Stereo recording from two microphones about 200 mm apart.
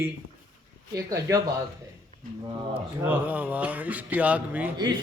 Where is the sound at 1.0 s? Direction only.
15° right (ahead or behind).